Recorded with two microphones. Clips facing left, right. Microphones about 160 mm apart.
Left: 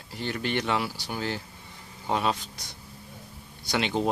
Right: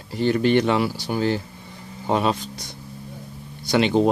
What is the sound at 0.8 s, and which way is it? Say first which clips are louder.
Speech: right 9 dB; 55° right (ahead or behind).